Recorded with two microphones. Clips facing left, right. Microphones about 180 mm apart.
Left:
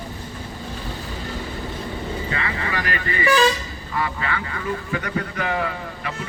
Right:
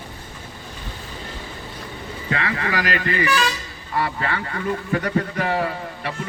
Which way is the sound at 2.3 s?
60° right (ahead or behind).